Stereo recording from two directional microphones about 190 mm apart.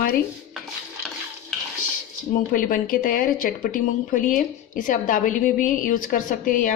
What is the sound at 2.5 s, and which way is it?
A woman's voice, 45° left (ahead or behind).